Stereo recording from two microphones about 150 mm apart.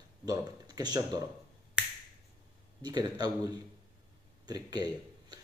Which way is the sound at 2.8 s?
25° right (ahead or behind).